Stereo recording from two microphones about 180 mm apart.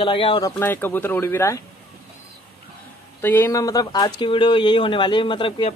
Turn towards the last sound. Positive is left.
turn(degrees=30)  # may be behind; listen again after turning